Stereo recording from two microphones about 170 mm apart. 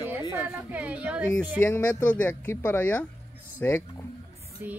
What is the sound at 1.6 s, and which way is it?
Speech, 10° left (ahead or behind).